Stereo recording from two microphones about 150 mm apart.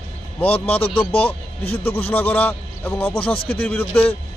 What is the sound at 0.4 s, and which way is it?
A man's voice, 40° left (ahead or behind).